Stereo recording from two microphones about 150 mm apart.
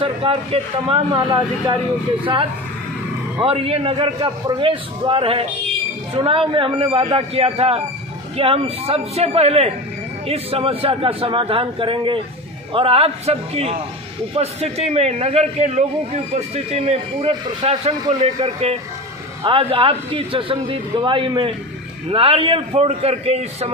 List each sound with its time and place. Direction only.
0.0 s a man's voice: 35° right (ahead or behind)
3.3 s a man's voice: 35° right (ahead or behind)